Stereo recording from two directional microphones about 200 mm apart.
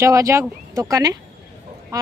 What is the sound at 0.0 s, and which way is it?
Speech, 15° right (ahead or behind).